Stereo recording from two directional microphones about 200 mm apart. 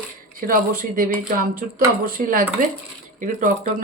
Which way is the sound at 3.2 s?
40° right (ahead or behind).